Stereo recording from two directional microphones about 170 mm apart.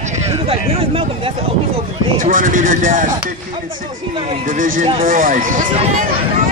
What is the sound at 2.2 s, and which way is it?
Speech, 50° right (ahead or behind).